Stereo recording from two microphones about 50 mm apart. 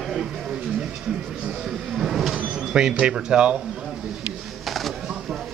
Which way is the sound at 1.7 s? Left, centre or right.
Centre.